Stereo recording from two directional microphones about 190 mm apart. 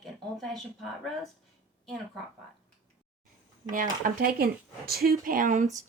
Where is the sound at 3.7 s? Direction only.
45° right (ahead or behind).